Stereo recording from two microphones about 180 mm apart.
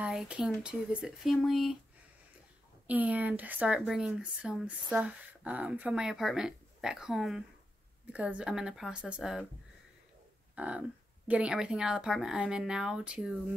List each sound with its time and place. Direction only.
0.0 s a sound: 5° right (ahead or behind)
0.7 s speech: centre (ahead or behind)
2.9 s speech: 10° right (ahead or behind)
10.5 s speech: 5° right (ahead or behind)